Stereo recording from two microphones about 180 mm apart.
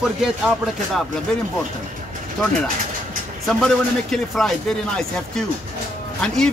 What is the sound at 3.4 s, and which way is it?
Speech, centre (ahead or behind).